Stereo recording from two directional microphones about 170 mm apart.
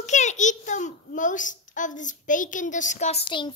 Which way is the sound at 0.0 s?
45° left (ahead or behind).